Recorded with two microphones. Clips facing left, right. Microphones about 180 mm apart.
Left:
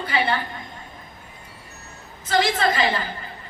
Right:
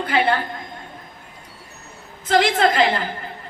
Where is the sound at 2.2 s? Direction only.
60° right (ahead or behind).